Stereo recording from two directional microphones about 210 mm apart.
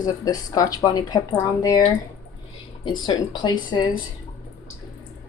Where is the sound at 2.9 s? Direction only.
20° left (ahead or behind).